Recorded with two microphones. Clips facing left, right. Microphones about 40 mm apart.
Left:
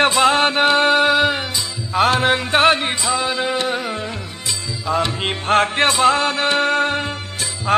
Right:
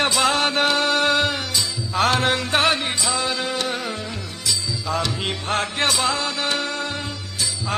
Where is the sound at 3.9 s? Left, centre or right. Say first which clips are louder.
Left 4 dB; left.